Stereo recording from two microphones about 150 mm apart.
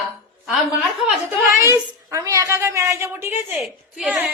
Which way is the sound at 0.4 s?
5° right (ahead or behind).